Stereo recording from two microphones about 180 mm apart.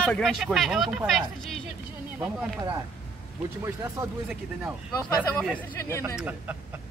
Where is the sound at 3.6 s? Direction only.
15° right (ahead or behind).